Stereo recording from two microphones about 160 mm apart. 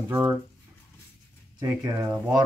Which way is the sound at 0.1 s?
10° right (ahead or behind).